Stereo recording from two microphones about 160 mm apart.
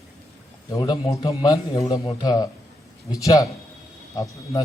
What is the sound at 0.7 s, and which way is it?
A man's voice, 25° left (ahead or behind).